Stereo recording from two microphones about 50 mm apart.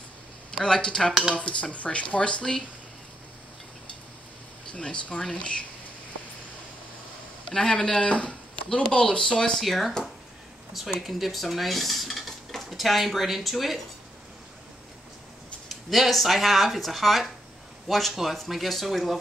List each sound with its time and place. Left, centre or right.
0.7 s speech: centre
4.7 s speech: centre
7.4 s speech: centre
11.0 s dishes: centre
15.7 s speech: centre